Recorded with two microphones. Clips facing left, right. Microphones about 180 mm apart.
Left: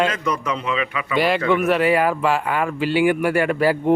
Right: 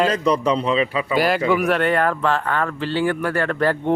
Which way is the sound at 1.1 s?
Centre (ahead or behind).